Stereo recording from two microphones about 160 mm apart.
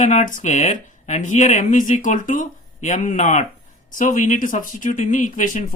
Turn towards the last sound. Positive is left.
turn(degrees=55)  # may be behind; listen again after turning